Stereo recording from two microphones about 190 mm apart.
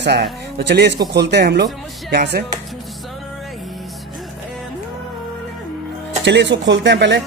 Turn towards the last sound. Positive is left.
turn(degrees=-65)  # may be behind; listen again after turning